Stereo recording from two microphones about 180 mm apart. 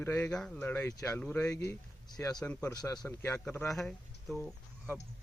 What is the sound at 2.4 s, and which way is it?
Speech, 5° left (ahead or behind).